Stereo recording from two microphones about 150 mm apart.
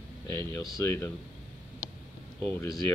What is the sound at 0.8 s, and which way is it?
Speech, 20° left (ahead or behind).